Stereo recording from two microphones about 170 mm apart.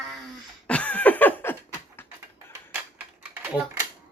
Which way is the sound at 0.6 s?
10° left (ahead or behind).